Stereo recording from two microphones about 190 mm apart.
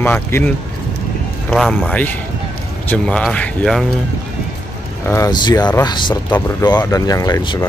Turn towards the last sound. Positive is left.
turn(degrees=20)  # may be behind; listen again after turning